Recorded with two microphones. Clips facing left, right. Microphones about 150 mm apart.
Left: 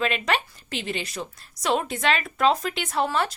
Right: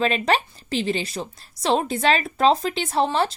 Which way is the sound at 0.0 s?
35° right (ahead or behind).